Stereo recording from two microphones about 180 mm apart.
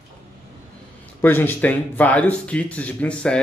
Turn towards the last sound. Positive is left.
turn(degrees=5)  # may be behind; listen again after turning